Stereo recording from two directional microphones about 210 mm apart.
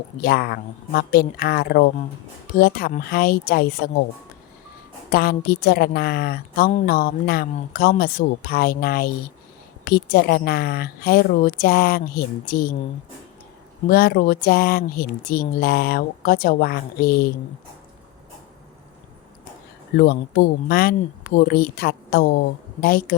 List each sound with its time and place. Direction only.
0.2 s a woman's voice: 45° left (ahead or behind)
5.1 s a woman's voice: 45° left (ahead or behind)
13.9 s a woman's voice: 45° left (ahead or behind)
20.0 s a woman's voice: 50° left (ahead or behind)